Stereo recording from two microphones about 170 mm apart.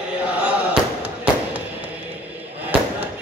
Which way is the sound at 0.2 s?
10° right (ahead or behind).